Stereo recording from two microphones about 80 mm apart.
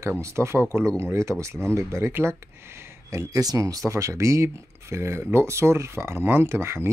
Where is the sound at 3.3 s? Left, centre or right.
Right.